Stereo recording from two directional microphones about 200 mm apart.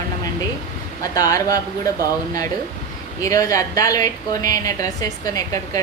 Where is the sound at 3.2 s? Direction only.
15° left (ahead or behind).